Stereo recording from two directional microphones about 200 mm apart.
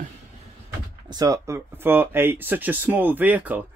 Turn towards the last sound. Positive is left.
turn(degrees=-10)  # may be behind; listen again after turning